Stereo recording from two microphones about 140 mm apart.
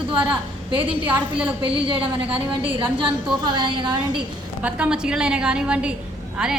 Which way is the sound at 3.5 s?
35° right (ahead or behind).